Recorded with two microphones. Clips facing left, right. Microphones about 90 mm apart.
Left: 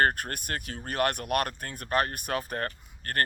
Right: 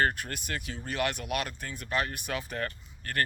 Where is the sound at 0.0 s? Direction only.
50° left (ahead or behind).